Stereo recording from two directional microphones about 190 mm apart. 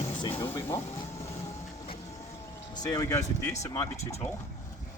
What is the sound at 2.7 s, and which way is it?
Speech, 20° left (ahead or behind).